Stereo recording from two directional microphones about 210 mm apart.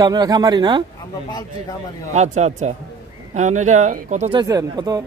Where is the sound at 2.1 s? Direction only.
35° right (ahead or behind).